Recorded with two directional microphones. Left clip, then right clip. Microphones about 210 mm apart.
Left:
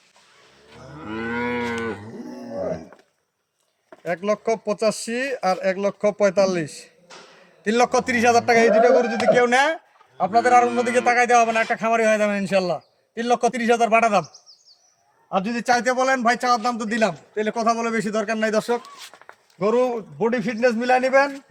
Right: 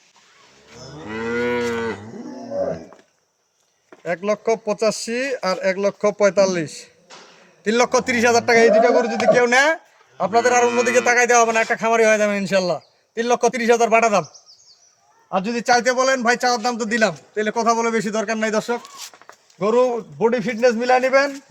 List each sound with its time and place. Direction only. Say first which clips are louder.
0.7 s moo: right 2 dB; 15° right (ahead or behind)
4.0 s a man's voice: right 2 dB; 5° right (ahead or behind)
15.3 s a man's voice: right 3 dB; 10° right (ahead or behind)